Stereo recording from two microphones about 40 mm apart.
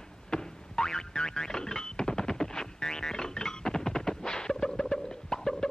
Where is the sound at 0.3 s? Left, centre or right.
Centre.